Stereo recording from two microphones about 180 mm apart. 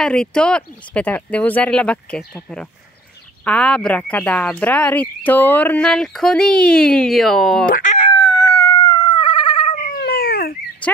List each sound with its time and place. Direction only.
0.0 s speech: 5° left (ahead or behind)
7.6 s speech: 50° left (ahead or behind)
8.1 s howl: 20° left (ahead or behind)
9.9 s a sound: 60° left (ahead or behind)